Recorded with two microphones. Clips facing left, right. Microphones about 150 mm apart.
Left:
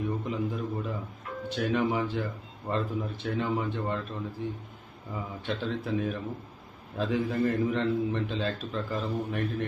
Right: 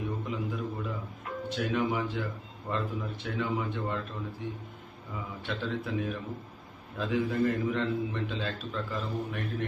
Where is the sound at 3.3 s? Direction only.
30° left (ahead or behind).